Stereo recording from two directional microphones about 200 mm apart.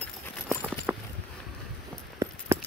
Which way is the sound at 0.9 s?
10° right (ahead or behind).